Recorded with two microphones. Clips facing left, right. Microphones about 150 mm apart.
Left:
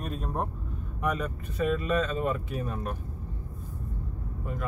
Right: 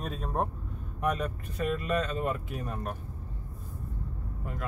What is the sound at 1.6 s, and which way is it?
Speech, centre (ahead or behind).